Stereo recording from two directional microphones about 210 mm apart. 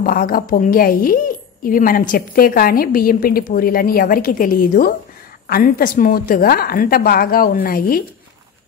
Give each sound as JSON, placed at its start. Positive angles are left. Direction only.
{"t": 0.0, "sound": "a woman's voice", "side_deg": 45}